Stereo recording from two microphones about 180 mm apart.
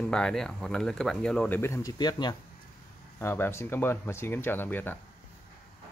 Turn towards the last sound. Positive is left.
turn(degrees=10)  # may be behind; listen again after turning